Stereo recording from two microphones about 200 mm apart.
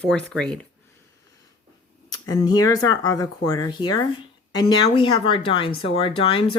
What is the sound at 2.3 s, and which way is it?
Speech, 20° left (ahead or behind).